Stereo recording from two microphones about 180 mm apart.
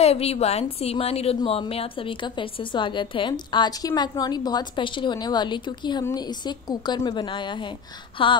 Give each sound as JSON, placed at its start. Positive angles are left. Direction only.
{"t": 0.0, "sound": "a woman's voice", "side_deg": 35}